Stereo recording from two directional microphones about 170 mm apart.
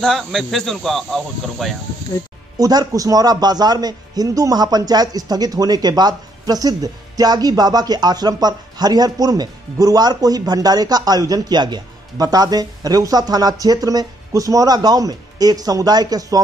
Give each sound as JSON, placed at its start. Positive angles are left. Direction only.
{"t": 0.0, "sound": "speech", "side_deg": 0}
{"t": 2.6, "sound": "a man's voice", "side_deg": -20}